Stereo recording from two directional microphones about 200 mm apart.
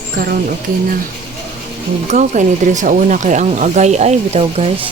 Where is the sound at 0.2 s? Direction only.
45° right (ahead or behind).